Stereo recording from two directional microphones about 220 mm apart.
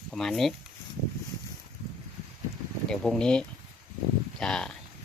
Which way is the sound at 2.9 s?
5° left (ahead or behind).